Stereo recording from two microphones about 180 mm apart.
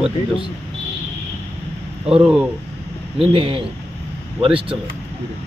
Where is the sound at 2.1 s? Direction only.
5° right (ahead or behind).